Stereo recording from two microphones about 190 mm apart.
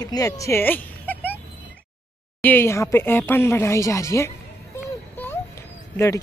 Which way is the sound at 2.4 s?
10° left (ahead or behind).